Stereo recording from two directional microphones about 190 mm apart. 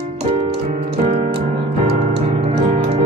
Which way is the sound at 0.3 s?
35° right (ahead or behind).